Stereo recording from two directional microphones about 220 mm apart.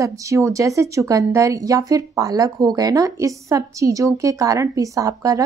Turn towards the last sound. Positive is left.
turn(degrees=-15)  # may be behind; listen again after turning